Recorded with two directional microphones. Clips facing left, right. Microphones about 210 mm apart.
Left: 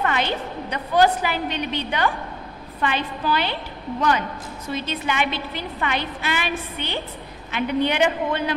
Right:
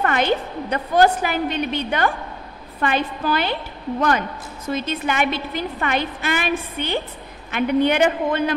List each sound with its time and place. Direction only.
0.0 s a woman's voice: 50° right (ahead or behind)
4.7 s a woman's voice: 45° right (ahead or behind)